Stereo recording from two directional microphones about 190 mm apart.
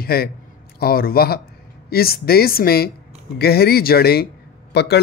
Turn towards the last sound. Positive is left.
turn(degrees=60)  # may be behind; listen again after turning